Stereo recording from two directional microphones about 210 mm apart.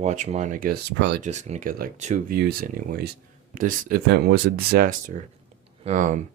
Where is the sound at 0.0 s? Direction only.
35° right (ahead or behind); by 1.2 s 55° right (ahead or behind).